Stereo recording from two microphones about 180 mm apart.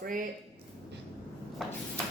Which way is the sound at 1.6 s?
Centre (ahead or behind).